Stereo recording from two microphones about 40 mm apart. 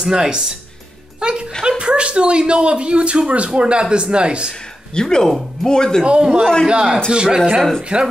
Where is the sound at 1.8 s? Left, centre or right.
Right.